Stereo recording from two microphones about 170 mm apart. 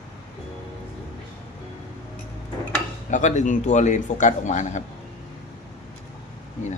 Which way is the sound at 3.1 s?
45° left (ahead or behind).